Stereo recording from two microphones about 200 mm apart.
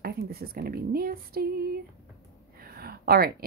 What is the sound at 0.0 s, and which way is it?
Speech, 50° right (ahead or behind).